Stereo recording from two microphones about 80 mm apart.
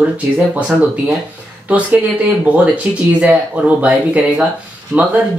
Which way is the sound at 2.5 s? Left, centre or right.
Centre.